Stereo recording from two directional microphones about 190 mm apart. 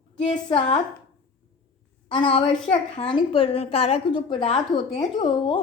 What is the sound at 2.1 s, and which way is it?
A woman's voice, 25° left (ahead or behind).